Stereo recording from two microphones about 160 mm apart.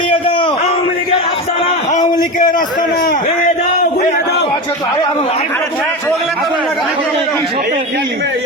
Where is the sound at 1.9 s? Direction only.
50° left (ahead or behind).